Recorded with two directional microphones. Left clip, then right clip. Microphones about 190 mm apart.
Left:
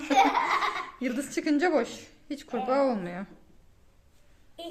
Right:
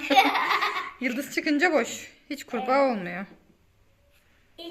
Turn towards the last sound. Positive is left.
turn(degrees=0)  # may be behind; listen again after turning